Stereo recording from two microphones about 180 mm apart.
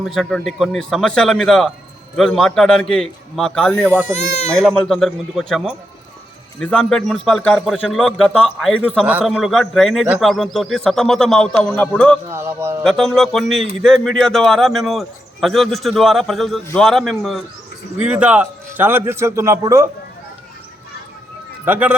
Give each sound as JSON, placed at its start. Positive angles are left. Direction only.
{"t": 0.0, "sound": "speech", "side_deg": 0}
{"t": 12.3, "sound": "a man's voice", "side_deg": -15}
{"t": 12.8, "sound": "a man's voice", "side_deg": 0}
{"t": 21.6, "sound": "speech", "side_deg": -10}